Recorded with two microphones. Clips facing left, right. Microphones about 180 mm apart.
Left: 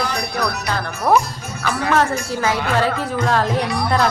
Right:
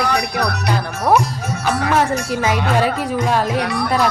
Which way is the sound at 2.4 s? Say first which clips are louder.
Right 1 dB; 15° right (ahead or behind).